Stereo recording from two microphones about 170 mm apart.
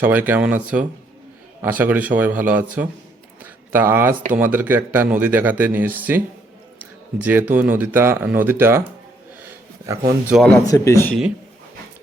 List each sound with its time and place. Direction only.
0.0 s speech: 10° right (ahead or behind)
3.4 s a sound: 10° right (ahead or behind)
4.3 s speech: 10° right (ahead or behind)
9.4 s a sound: 15° right (ahead or behind)
10.3 s speech: 5° left (ahead or behind)
10.7 s speech: 20° left (ahead or behind)